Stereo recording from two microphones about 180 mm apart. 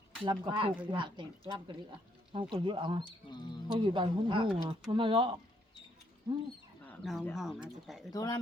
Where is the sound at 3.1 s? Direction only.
25° left (ahead or behind).